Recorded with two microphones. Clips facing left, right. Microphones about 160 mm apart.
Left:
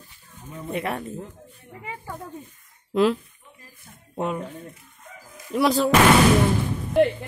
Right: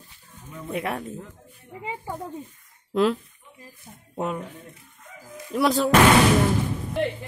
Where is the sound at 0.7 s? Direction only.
Centre (ahead or behind).